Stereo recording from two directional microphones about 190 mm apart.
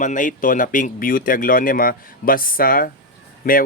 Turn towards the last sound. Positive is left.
turn(degrees=50)  # may be behind; listen again after turning